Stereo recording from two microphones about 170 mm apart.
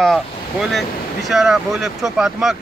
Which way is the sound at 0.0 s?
Centre (ahead or behind).